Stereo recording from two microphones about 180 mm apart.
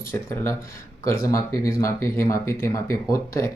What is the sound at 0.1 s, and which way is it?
Speech, 15° left (ahead or behind).